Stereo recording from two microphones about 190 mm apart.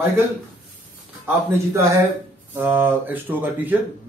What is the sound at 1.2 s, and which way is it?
Speech, 15° right (ahead or behind).